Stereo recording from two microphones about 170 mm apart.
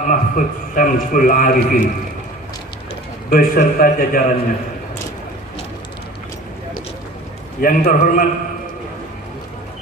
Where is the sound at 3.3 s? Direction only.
55° left (ahead or behind).